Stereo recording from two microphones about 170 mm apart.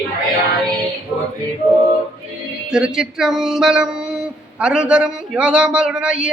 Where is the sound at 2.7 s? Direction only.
5° right (ahead or behind).